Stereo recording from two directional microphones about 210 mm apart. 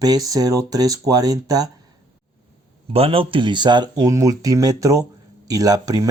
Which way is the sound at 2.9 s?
25° right (ahead or behind).